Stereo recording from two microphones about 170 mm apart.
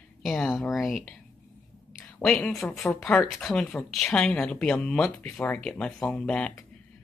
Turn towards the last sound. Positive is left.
turn(degrees=5)  # may be behind; listen again after turning